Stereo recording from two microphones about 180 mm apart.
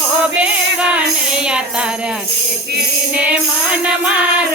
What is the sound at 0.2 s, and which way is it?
Music, 5° right (ahead or behind).